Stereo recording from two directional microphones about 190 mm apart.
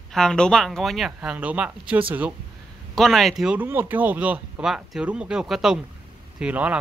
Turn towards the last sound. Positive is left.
turn(degrees=-5)  # may be behind; listen again after turning